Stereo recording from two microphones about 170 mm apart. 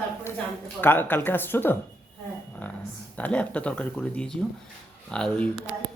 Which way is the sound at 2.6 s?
10° left (ahead or behind).